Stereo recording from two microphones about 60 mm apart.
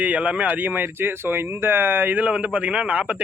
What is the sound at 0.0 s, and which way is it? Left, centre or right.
A man's voice, right.